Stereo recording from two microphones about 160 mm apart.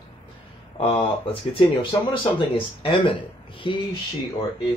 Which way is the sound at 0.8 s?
35° left (ahead or behind).